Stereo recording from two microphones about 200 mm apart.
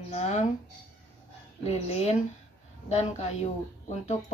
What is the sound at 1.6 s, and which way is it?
Speech, 30° left (ahead or behind).